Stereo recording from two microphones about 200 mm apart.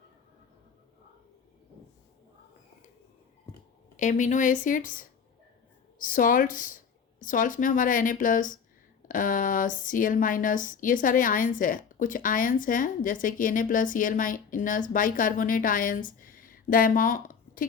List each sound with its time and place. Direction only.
3.9 s speech: 40° left (ahead or behind)